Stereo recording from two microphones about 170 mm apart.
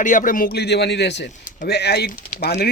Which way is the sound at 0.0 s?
50° left (ahead or behind).